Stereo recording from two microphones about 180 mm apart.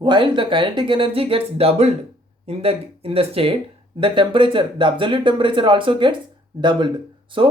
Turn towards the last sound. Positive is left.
turn(degrees=-30)  # may be behind; listen again after turning